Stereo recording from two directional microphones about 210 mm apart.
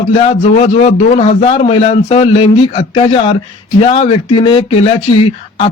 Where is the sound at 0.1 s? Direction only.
30° left (ahead or behind).